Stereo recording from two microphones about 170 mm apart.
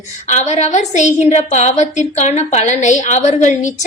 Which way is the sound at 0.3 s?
45° left (ahead or behind).